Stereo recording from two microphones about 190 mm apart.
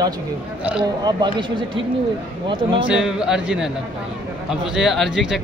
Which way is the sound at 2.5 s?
25° right (ahead or behind).